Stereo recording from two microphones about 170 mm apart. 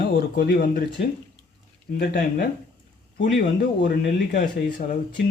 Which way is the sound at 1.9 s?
60° left (ahead or behind).